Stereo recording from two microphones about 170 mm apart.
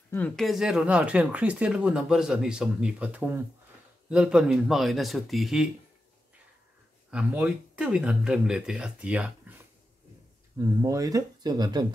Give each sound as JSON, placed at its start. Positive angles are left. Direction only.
{"t": 0.1, "sound": "speech", "side_deg": 5}
{"t": 7.1, "sound": "speech", "side_deg": -5}
{"t": 10.6, "sound": "speech", "side_deg": -20}